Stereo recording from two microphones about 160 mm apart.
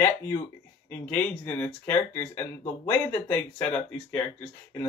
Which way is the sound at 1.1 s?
10° left (ahead or behind).